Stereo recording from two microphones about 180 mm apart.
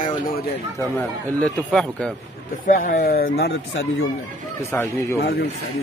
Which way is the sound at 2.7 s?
50° left (ahead or behind).